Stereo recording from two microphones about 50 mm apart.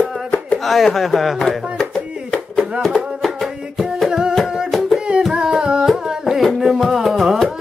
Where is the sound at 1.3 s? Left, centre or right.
Centre.